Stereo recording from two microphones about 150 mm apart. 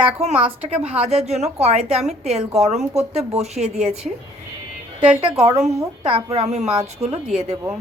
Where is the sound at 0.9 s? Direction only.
40° right (ahead or behind).